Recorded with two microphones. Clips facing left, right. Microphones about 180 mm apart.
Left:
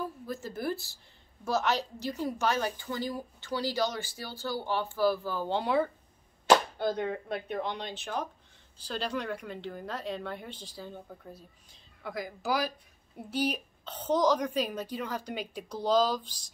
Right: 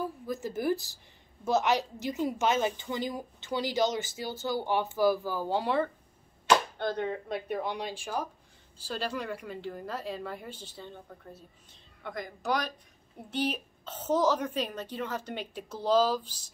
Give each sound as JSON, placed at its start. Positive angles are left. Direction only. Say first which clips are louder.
{"t": 0.0, "sound": "a woman's voice", "louder": "right 3 dB", "side_deg": -15}
{"t": 7.0, "sound": "a child's voice", "louder": "even", "side_deg": 0}